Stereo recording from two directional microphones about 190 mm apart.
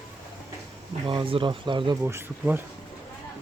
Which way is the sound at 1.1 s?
25° right (ahead or behind).